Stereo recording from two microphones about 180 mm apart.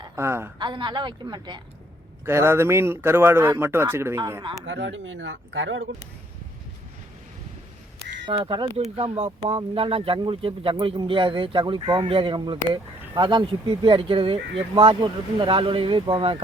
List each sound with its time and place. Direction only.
0.0 s a woman's voice: 15° right (ahead or behind)
0.6 s a man's voice: 25° right (ahead or behind)
4.6 s speech: 90° right
8.3 s speech: 30° right (ahead or behind)